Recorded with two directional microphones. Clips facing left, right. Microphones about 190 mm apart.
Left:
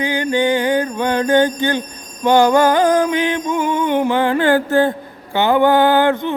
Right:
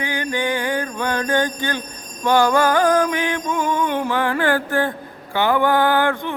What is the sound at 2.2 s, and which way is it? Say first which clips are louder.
Music: left 4 dB; 20° left (ahead or behind).